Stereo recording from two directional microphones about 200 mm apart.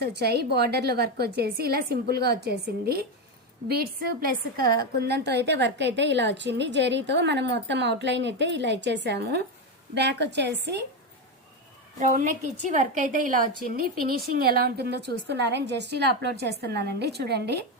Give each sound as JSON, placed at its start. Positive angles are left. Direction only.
{"t": 0.0, "sound": "a woman's voice", "side_deg": -55}
{"t": 11.9, "sound": "a woman's voice", "side_deg": -40}